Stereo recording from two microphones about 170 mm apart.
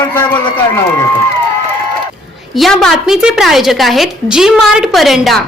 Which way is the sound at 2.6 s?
Centre (ahead or behind).